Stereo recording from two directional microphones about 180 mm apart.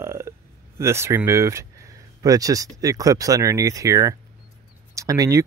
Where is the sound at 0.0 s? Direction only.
15° right (ahead or behind).